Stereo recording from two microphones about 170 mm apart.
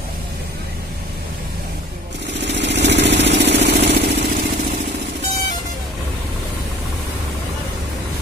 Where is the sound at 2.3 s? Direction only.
90° right.